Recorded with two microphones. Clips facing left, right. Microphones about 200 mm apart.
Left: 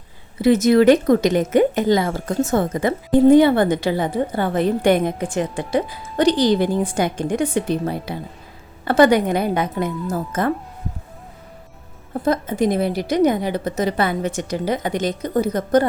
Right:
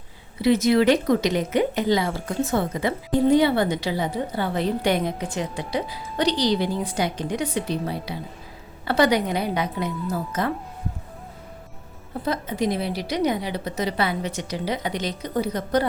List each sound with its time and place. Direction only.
0.4 s speech: 45° left (ahead or behind)
12.2 s speech: 50° left (ahead or behind)